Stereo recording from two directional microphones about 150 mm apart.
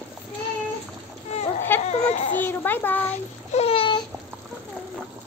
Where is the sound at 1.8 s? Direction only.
45° left (ahead or behind).